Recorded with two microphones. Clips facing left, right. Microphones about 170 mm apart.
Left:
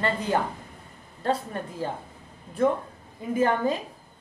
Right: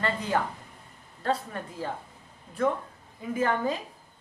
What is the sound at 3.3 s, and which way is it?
Speech, 25° left (ahead or behind).